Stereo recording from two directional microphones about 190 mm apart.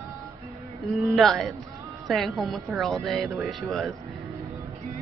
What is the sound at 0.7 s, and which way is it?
Speech, centre (ahead or behind).